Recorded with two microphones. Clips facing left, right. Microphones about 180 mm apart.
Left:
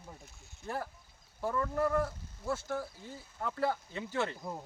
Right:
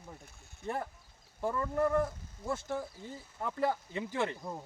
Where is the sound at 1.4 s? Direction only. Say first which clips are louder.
Right 1 dB; 15° right (ahead or behind).